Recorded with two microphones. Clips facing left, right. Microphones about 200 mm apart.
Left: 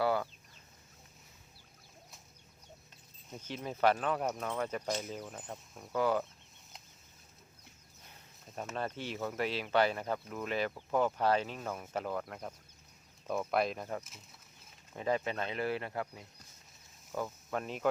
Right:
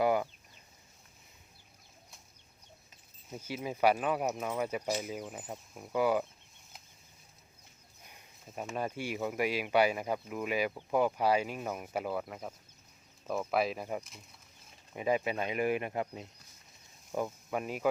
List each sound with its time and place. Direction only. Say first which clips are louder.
0.0 s chicken: right 3 dB; 15° right (ahead or behind)
3.2 s speech: right 3 dB; 10° right (ahead or behind)
8.4 s speech: right 2 dB; 5° right (ahead or behind)